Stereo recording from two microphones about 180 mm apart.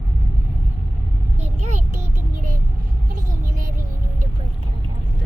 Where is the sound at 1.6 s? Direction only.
40° right (ahead or behind).